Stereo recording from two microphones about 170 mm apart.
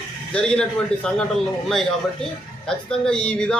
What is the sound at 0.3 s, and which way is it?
Speech, 5° left (ahead or behind).